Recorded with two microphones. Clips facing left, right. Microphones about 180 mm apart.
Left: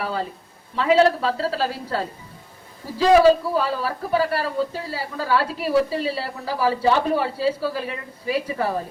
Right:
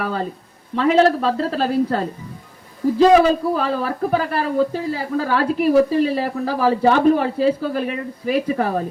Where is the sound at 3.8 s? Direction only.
50° right (ahead or behind).